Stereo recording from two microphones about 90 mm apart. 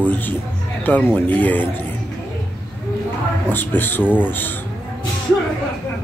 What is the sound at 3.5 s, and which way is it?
Speech, 20° left (ahead or behind).